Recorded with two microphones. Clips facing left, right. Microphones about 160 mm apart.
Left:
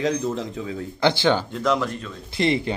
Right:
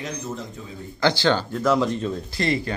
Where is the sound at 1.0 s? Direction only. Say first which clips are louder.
Left 1 dB; 20° left (ahead or behind).